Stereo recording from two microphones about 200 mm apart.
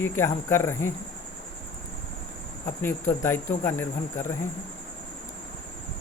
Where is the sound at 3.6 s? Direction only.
10° left (ahead or behind).